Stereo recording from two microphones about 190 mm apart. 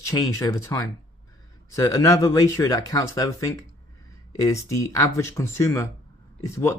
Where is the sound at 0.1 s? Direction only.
20° left (ahead or behind).